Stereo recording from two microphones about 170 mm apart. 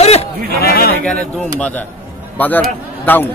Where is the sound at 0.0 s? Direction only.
40° left (ahead or behind).